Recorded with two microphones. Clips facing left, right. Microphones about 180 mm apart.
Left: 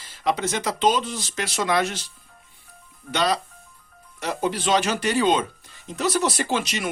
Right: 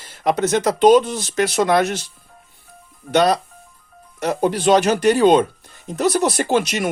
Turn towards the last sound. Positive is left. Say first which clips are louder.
# right 6 dB
turn(degrees=-50)  # may be behind; listen again after turning